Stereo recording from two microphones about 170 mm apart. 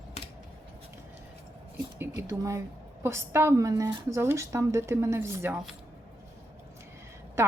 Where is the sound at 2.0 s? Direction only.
15° right (ahead or behind).